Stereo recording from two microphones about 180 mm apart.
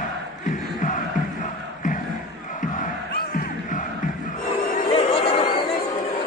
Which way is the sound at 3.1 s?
50° left (ahead or behind).